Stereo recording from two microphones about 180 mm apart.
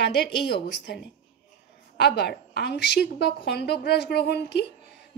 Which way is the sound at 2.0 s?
65° left (ahead or behind).